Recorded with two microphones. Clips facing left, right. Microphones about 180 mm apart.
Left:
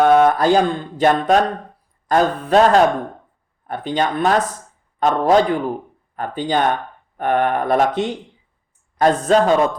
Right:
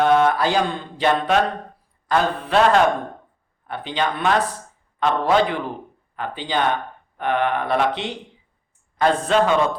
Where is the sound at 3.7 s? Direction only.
45° left (ahead or behind).